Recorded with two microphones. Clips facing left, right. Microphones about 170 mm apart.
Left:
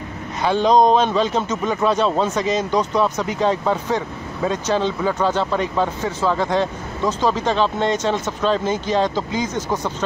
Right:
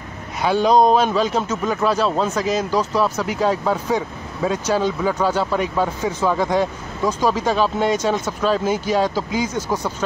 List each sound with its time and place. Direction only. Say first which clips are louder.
0.4 s a man's voice: even; 5° right (ahead or behind)